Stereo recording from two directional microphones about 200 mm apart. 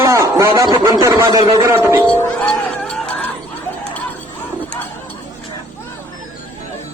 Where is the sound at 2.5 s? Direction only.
5° left (ahead or behind).